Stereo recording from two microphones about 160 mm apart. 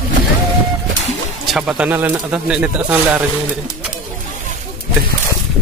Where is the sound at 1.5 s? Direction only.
5° right (ahead or behind).